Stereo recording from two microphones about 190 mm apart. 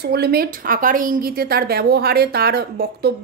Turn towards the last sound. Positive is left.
turn(degrees=-55)  # may be behind; listen again after turning